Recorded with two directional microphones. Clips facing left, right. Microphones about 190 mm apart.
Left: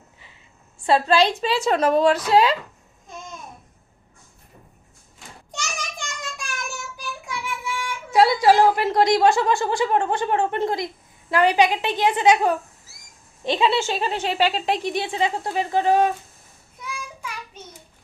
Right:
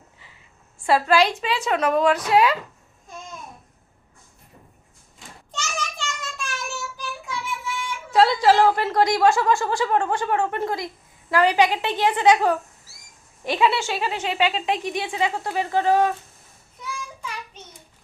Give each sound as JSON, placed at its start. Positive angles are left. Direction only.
{"t": 0.9, "sound": "a woman's voice", "side_deg": 25}
{"t": 5.5, "sound": "child singing", "side_deg": 15}
{"t": 9.4, "sound": "a woman's voice", "side_deg": 20}
{"t": 15.4, "sound": "a woman's voice", "side_deg": 20}